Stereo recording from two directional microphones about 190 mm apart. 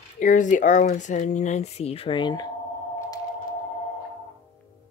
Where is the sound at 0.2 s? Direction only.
40° left (ahead or behind); by 2.5 s 20° left (ahead or behind).